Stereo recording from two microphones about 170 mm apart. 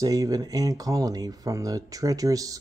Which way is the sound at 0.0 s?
20° right (ahead or behind).